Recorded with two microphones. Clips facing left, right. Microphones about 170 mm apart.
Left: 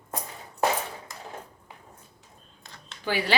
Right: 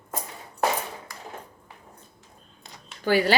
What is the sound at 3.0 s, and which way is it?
Speech, 40° right (ahead or behind).